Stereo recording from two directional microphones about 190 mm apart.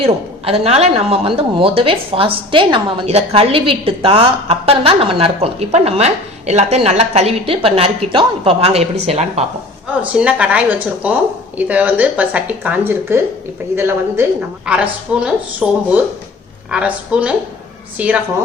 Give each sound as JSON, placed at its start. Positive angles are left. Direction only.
{"t": 0.0, "sound": "a woman's voice", "side_deg": -30}
{"t": 10.0, "sound": "a woman's voice", "side_deg": -5}